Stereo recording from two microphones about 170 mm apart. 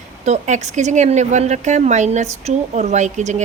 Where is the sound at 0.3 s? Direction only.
45° right (ahead or behind).